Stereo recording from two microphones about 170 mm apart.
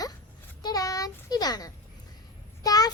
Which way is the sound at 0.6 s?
20° left (ahead or behind).